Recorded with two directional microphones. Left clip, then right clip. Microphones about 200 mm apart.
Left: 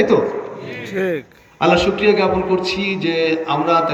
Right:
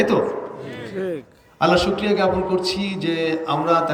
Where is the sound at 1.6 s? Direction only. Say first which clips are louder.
Left 4 dB; 5° right (ahead or behind).